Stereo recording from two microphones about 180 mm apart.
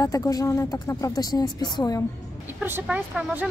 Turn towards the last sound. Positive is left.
turn(degrees=-10)  # may be behind; listen again after turning